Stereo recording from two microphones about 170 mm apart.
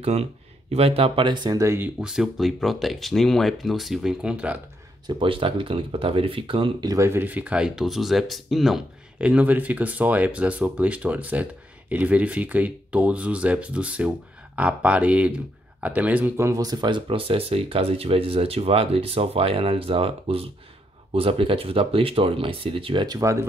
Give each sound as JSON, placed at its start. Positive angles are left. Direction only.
{"t": 0.0, "sound": "speech", "side_deg": -40}
{"t": 2.0, "sound": "speech", "side_deg": -5}
{"t": 5.0, "sound": "speech", "side_deg": -30}